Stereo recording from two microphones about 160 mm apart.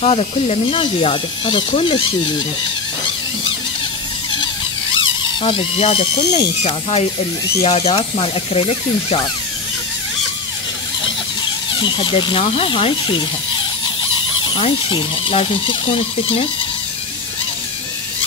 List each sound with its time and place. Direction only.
0.0 s speech: 40° left (ahead or behind)
4.9 s speech: 35° left (ahead or behind)
11.8 s speech: 30° left (ahead or behind)
14.4 s speech: 30° left (ahead or behind)